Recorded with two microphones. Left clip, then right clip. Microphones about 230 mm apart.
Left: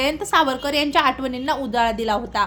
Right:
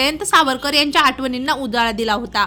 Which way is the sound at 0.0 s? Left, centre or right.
Right.